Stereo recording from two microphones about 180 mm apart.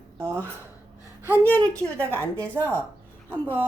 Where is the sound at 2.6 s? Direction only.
20° right (ahead or behind).